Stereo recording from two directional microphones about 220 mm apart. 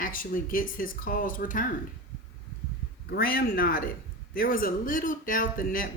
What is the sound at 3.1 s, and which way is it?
A man's voice, 40° left (ahead or behind).